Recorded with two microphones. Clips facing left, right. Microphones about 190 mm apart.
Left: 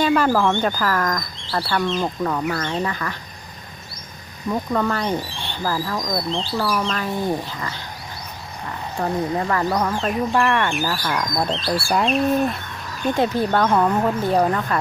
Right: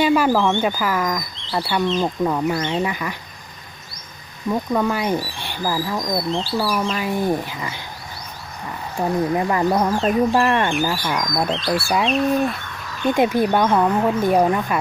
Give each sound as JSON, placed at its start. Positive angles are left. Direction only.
{"t": 0.0, "sound": "speech", "side_deg": -10}
{"t": 4.5, "sound": "speech", "side_deg": -10}
{"t": 9.0, "sound": "speech", "side_deg": -15}
{"t": 9.8, "sound": "speech", "side_deg": -35}
{"t": 11.0, "sound": "speech", "side_deg": -10}
{"t": 13.1, "sound": "speech", "side_deg": -15}